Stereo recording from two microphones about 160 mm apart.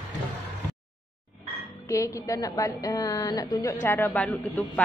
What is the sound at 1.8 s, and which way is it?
A woman's voice, 20° left (ahead or behind).